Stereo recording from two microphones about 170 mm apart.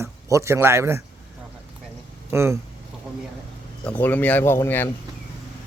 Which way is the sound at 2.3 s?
15° right (ahead or behind).